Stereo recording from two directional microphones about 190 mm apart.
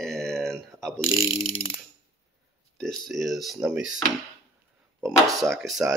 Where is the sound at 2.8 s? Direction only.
Centre (ahead or behind).